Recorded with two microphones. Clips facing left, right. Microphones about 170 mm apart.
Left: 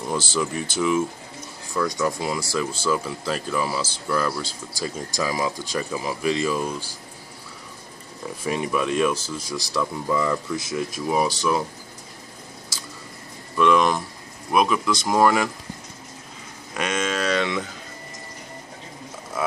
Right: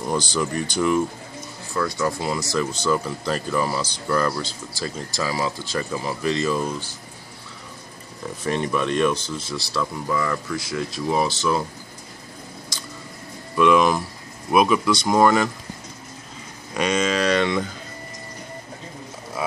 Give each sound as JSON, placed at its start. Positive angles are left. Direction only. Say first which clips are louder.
{"t": 0.1, "sound": "speech", "louder": "right 1 dB", "side_deg": 0}
{"t": 1.7, "sound": "speech", "louder": "even", "side_deg": 15}
{"t": 8.5, "sound": "speech", "louder": "right 1 dB", "side_deg": 5}
{"t": 12.7, "sound": "squish", "louder": "right 2 dB", "side_deg": 5}
{"t": 13.6, "sound": "speech", "louder": "right 2 dB", "side_deg": -5}
{"t": 16.7, "sound": "a sound", "louder": "right 4 dB", "side_deg": 5}